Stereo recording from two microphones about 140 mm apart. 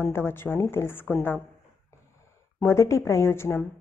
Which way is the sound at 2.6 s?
20° left (ahead or behind).